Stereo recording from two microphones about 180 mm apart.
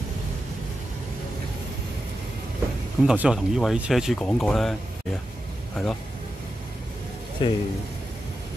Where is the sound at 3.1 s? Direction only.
5° right (ahead or behind).